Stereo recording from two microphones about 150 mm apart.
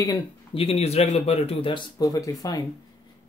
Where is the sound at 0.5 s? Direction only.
45° left (ahead or behind); by 2.3 s 25° left (ahead or behind).